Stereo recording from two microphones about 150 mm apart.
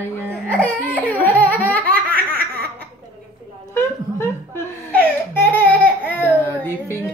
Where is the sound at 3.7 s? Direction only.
15° left (ahead or behind).